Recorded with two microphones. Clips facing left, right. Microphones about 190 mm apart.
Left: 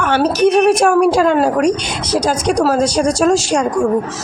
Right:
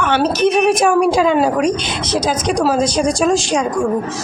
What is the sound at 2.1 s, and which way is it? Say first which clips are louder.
Speech: left 2 dB; 10° left (ahead or behind).